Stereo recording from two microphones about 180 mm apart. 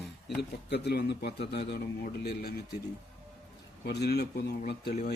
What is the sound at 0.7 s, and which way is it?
A man's voice, 65° left (ahead or behind).